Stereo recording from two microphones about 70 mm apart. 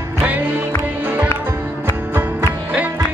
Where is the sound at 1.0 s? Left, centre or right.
Right.